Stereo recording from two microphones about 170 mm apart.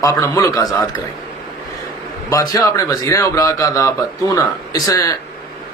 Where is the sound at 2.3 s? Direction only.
20° left (ahead or behind).